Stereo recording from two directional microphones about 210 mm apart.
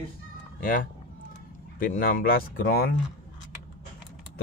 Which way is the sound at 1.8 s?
40° left (ahead or behind).